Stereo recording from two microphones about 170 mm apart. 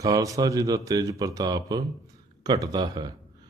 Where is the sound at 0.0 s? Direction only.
20° right (ahead or behind).